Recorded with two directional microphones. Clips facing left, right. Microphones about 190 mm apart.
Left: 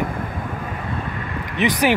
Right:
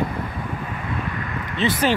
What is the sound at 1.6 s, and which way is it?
Speech, 15° left (ahead or behind).